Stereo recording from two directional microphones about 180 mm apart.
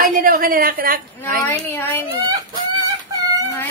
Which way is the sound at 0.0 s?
50° right (ahead or behind).